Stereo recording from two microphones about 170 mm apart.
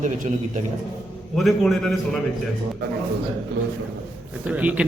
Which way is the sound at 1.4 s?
Centre (ahead or behind).